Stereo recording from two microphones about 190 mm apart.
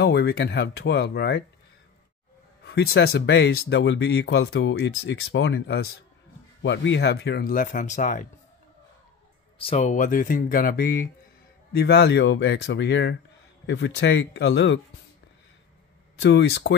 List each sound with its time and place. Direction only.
0.0 s speech: 60° left (ahead or behind)
2.6 s speech: 60° left (ahead or behind); by 8.3 s 45° left (ahead or behind)
9.6 s speech: 35° left (ahead or behind); by 14.8 s 70° left (ahead or behind)
16.2 s speech: 65° left (ahead or behind)